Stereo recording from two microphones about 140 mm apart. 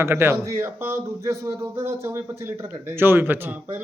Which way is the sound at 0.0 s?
15° right (ahead or behind).